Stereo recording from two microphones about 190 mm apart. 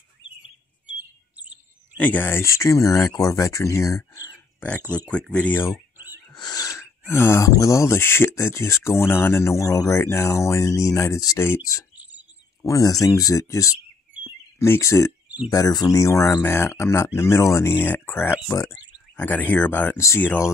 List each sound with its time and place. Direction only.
2.0 s speech: 10° left (ahead or behind)
5.1 s speech: 5° left (ahead or behind)
5.9 s speech: 20° left (ahead or behind)
14.2 s a sound: 15° left (ahead or behind)
15.2 s a sound: 5° right (ahead or behind)
15.5 s speech: 20° left (ahead or behind)